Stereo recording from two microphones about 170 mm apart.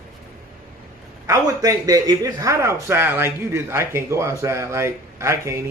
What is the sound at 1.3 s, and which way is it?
A man's voice, 20° right (ahead or behind).